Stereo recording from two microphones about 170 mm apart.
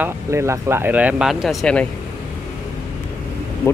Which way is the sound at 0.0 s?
15° right (ahead or behind).